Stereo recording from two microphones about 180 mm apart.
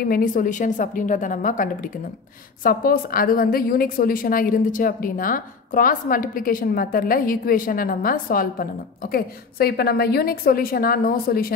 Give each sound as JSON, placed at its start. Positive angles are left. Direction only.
{"t": 0.0, "sound": "a woman's voice", "side_deg": 50}